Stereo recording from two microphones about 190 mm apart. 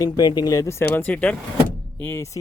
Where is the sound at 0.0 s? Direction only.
20° left (ahead or behind).